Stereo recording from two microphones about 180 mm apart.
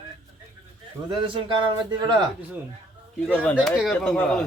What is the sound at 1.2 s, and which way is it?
Speech, 30° right (ahead or behind).